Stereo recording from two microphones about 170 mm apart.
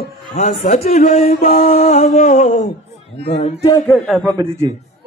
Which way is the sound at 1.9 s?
45° left (ahead or behind).